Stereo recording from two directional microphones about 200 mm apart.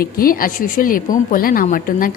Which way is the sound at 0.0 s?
45° left (ahead or behind).